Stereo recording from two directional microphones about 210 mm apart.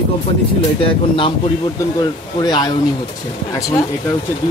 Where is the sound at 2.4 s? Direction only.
20° left (ahead or behind).